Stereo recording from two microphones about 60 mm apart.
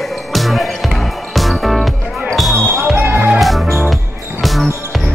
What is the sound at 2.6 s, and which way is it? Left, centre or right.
Music, right.